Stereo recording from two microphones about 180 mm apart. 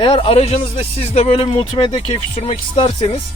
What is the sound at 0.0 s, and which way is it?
Speech, 30° left (ahead or behind).